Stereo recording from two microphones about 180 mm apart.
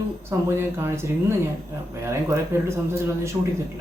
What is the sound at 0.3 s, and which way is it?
Speech, 15° right (ahead or behind).